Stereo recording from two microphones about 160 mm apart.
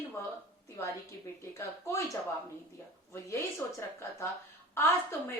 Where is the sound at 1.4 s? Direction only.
15° left (ahead or behind).